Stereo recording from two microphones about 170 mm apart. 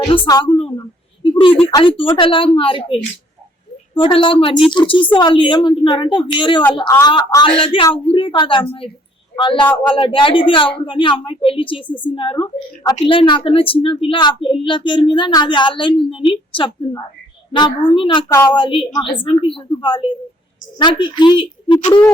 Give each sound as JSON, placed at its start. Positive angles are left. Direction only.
{"t": 0.1, "sound": "a woman's voice", "side_deg": 25}
{"t": 1.2, "sound": "a sound", "side_deg": 30}
{"t": 1.7, "sound": "a man's voice", "side_deg": 30}
{"t": 18.3, "sound": "a woman's voice", "side_deg": 15}
{"t": 18.5, "sound": "speech", "side_deg": 30}